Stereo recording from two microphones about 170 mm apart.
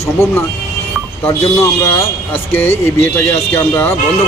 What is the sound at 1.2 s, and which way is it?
Speech, 15° left (ahead or behind).